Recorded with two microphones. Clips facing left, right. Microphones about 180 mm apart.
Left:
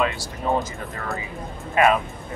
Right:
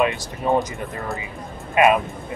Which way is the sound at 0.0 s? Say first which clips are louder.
Right 3 dB; 20° right (ahead or behind).